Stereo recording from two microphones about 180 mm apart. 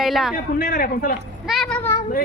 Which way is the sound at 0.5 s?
55° left (ahead or behind).